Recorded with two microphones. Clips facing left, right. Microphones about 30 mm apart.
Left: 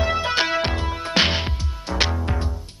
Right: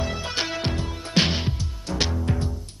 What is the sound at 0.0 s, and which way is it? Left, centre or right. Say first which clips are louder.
Music: left 7 dB; left.